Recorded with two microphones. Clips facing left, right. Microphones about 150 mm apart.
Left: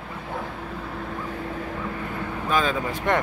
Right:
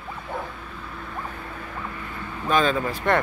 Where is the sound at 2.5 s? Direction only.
10° left (ahead or behind).